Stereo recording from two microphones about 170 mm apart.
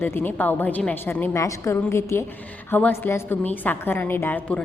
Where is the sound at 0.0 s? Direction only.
10° left (ahead or behind).